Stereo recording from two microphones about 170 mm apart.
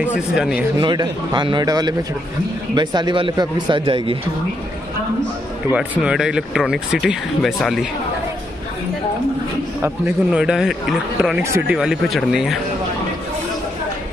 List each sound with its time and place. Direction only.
0.0 s speech: 5° right (ahead or behind)
0.7 s speech: 25° right (ahead or behind)
5.7 s speech: 5° right (ahead or behind)
9.8 s speech: 5° right (ahead or behind)